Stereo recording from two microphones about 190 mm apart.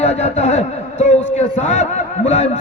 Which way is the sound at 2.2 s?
35° left (ahead or behind).